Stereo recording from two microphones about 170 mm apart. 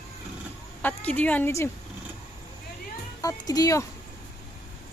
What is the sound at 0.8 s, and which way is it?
Speech, 10° left (ahead or behind).